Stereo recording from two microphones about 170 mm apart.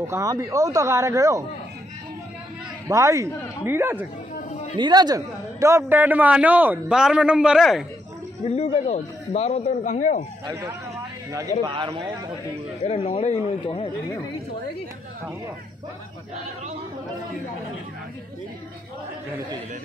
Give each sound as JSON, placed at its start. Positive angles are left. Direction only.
{"t": 0.0, "sound": "speech", "side_deg": -20}
{"t": 2.9, "sound": "a man's voice", "side_deg": -15}
{"t": 4.7, "sound": "a man's voice", "side_deg": -25}
{"t": 8.5, "sound": "a man's voice", "side_deg": 35}
{"t": 10.4, "sound": "speech", "side_deg": -25}
{"t": 12.8, "sound": "speech", "side_deg": 35}